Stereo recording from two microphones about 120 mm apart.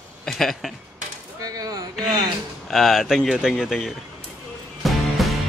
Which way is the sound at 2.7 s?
Centre (ahead or behind).